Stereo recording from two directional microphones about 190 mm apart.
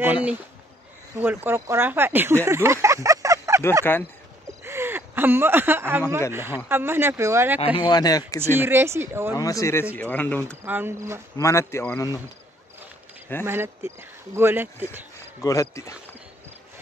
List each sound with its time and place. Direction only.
1.2 s speech: 10° right (ahead or behind)
3.9 s speech: 10° left (ahead or behind)
4.6 s a sound: 10° right (ahead or behind)
6.3 s speech: 10° right (ahead or behind)
7.6 s speech: 25° left (ahead or behind)
8.5 s speech: 10° right (ahead or behind)
9.3 s speech: 20° left (ahead or behind)
10.6 s speech: 10° right (ahead or behind)
11.3 s speech: 15° left (ahead or behind)
13.5 s speech: 10° right (ahead or behind)
15.4 s speech: 15° left (ahead or behind)